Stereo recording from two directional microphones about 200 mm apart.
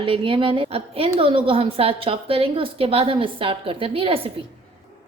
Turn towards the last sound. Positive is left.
turn(degrees=-25)  # may be behind; listen again after turning